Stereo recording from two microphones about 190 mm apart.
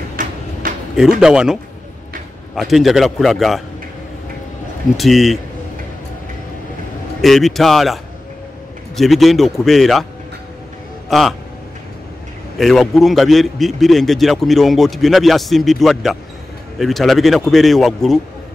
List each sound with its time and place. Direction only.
0.1 s a sound: 45° right (ahead or behind)
1.2 s a man's voice: 5° right (ahead or behind)
4.9 s a man's voice: centre (ahead or behind)
7.2 s a man's voice: centre (ahead or behind)
11.1 s a man's voice: centre (ahead or behind)
12.5 s a man's voice: centre (ahead or behind)